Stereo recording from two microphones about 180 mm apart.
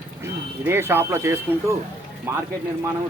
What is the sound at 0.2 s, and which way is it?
Speech, 15° right (ahead or behind).